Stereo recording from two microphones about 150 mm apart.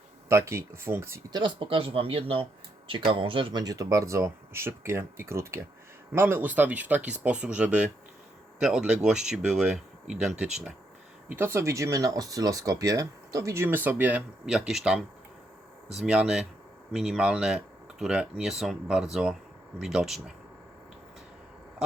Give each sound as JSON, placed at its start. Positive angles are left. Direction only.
{"t": 0.3, "sound": "speech", "side_deg": -20}
{"t": 1.4, "sound": "speech", "side_deg": -35}
{"t": 11.3, "sound": "speech", "side_deg": -15}